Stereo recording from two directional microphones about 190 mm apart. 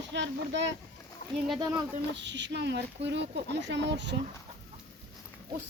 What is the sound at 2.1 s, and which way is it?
Speech, 70° right (ahead or behind).